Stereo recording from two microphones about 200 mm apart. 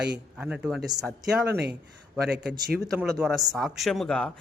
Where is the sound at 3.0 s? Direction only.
Centre (ahead or behind).